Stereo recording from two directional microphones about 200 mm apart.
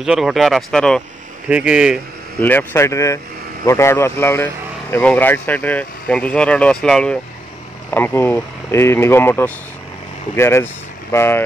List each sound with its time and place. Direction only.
0.0 s speech: centre (ahead or behind)
2.4 s speech: 10° left (ahead or behind)